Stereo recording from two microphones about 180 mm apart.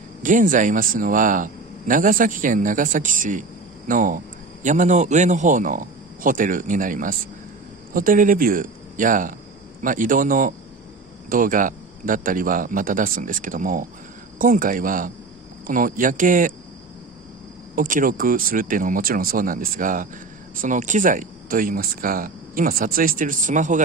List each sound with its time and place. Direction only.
0.2 s a man's voice: 45° right (ahead or behind)
17.7 s a man's voice: 50° right (ahead or behind)